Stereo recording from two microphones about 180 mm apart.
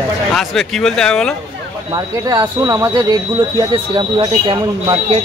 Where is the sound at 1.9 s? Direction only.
20° right (ahead or behind).